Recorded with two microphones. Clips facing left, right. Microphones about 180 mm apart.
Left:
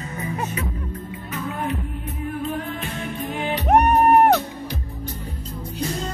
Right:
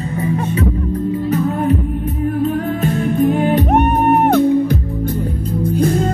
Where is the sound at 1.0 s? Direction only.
45° right (ahead or behind).